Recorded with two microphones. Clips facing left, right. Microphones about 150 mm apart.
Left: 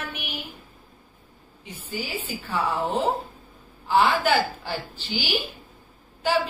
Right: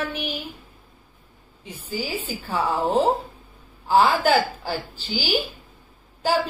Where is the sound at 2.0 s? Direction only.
35° right (ahead or behind).